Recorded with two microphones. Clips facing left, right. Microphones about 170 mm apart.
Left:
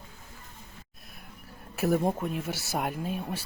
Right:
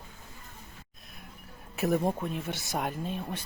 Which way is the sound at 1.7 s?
Centre (ahead or behind).